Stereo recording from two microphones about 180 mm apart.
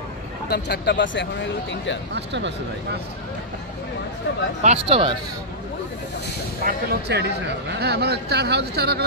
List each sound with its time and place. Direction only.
0.5 s speech: 65° left (ahead or behind); by 2.0 s 90° left
2.1 s speech: 80° right
4.6 s speech: 35° right (ahead or behind)
6.6 s speech: 65° right (ahead or behind)